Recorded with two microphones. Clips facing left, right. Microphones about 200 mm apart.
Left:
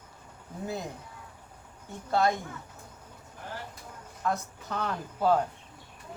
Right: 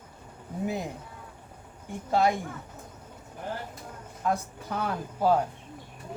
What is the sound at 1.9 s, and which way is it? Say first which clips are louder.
Speech: right 2 dB; 15° right (ahead or behind).